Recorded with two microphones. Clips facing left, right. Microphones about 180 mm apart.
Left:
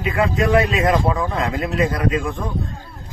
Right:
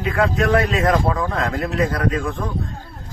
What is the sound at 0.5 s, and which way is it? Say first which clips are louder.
Speech: left 2 dB; 15° left (ahead or behind).